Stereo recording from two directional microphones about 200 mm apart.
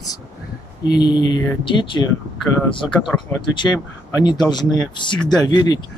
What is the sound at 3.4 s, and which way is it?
Speech, 25° left (ahead or behind).